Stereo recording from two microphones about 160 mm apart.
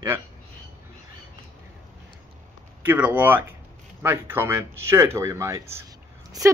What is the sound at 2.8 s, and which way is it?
Speech, 10° right (ahead or behind).